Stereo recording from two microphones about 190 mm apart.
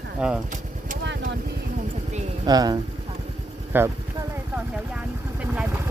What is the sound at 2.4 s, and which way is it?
Speech, 20° right (ahead or behind).